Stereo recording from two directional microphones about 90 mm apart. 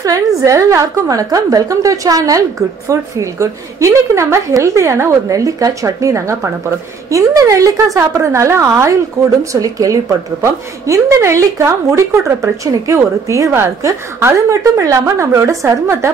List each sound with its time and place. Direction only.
0.0 s a woman's voice: 40° right (ahead or behind)